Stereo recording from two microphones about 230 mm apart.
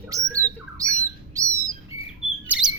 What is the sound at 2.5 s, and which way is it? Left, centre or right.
Bird, centre.